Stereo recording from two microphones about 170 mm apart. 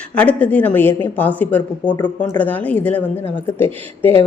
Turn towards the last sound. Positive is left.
turn(degrees=10)  # may be behind; listen again after turning